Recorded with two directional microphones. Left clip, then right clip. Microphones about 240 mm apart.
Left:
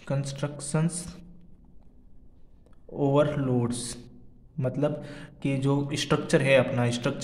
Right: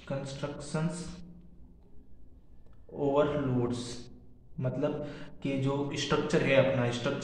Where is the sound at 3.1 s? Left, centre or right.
Left.